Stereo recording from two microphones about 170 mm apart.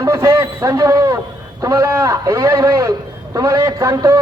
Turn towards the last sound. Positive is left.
turn(degrees=-20)  # may be behind; listen again after turning